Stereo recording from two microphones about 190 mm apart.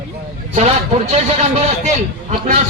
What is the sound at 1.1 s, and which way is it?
Speech, 35° right (ahead or behind).